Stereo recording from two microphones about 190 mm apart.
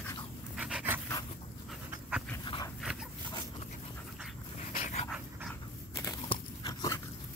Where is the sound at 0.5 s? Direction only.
5° right (ahead or behind).